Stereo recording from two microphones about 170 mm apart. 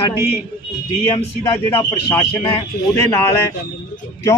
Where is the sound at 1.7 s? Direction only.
15° left (ahead or behind).